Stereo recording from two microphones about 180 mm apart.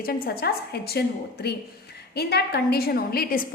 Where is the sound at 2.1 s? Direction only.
60° left (ahead or behind).